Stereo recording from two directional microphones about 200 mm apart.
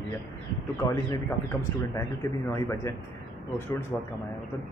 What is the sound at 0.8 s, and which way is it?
A man's voice, 15° left (ahead or behind).